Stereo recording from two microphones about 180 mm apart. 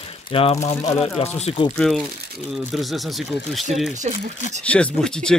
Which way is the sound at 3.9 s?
40° right (ahead or behind).